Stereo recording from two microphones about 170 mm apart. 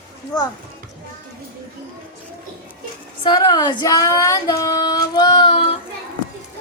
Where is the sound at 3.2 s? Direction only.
25° left (ahead or behind).